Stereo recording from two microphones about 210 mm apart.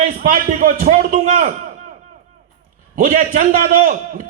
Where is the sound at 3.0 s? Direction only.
35° right (ahead or behind).